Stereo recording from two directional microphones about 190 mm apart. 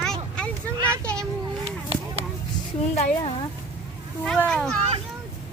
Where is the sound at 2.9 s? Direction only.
35° left (ahead or behind).